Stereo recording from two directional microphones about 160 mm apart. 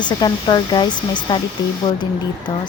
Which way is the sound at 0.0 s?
25° left (ahead or behind).